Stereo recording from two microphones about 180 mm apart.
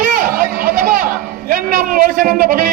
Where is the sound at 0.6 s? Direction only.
55° right (ahead or behind).